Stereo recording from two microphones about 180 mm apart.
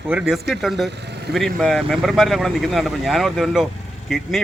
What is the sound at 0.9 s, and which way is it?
Vehicle, 70° right (ahead or behind).